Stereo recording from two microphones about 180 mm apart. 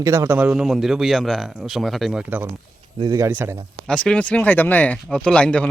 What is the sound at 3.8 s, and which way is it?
Speech, 5° left (ahead or behind).